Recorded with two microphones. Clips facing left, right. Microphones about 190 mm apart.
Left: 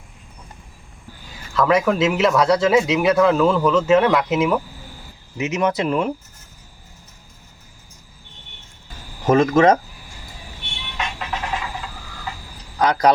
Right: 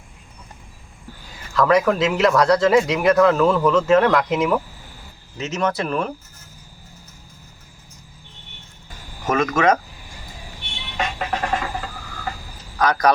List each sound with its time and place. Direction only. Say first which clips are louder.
1.5 s speech: even; 5° left (ahead or behind)
9.2 s speech: left 4 dB; 30° left (ahead or behind)
10.9 s a sound: right 3 dB; 45° right (ahead or behind)
12.8 s speech: left 2 dB; 25° left (ahead or behind)